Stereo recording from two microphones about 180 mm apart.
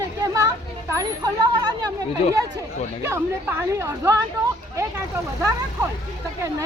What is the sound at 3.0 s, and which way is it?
Speech, 15° right (ahead or behind).